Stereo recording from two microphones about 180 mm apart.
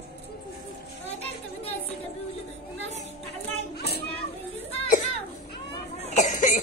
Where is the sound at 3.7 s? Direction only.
60° left (ahead or behind).